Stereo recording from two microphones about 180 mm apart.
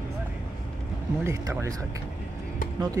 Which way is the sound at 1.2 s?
15° right (ahead or behind).